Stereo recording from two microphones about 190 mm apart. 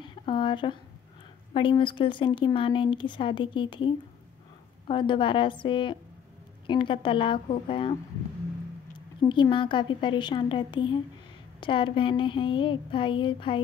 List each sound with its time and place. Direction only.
0.0 s a sound: 25° left (ahead or behind)
1.5 s a woman's voice: 25° left (ahead or behind)
8.9 s a woman's voice: 25° left (ahead or behind)